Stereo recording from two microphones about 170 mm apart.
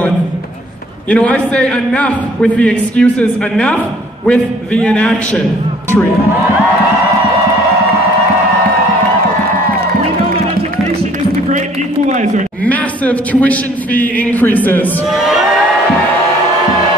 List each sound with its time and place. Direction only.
1.1 s a man's voice: 5° left (ahead or behind)
12.1 s speech: 45° right (ahead or behind)
12.6 s a man's voice: 10° left (ahead or behind)